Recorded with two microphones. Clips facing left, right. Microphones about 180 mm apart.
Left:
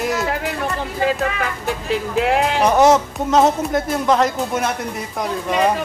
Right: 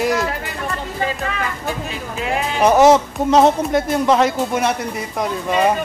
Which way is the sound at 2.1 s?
75° left (ahead or behind).